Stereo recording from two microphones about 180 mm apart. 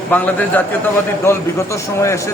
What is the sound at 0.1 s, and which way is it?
A man's voice, 10° left (ahead or behind).